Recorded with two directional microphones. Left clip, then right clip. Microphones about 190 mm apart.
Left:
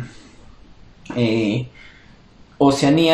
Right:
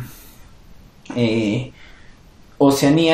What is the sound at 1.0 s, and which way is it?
Speech, 25° right (ahead or behind).